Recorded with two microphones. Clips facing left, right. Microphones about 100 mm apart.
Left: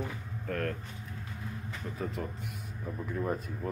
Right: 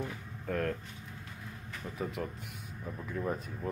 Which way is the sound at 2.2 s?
5° left (ahead or behind).